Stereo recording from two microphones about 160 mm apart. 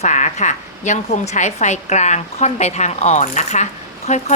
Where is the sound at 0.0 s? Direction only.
45° left (ahead or behind).